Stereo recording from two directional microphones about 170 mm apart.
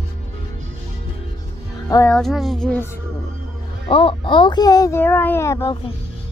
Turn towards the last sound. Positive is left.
turn(degrees=15)  # may be behind; listen again after turning